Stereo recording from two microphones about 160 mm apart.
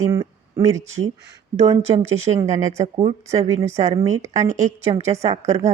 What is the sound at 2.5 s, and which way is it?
Speech, 45° right (ahead or behind).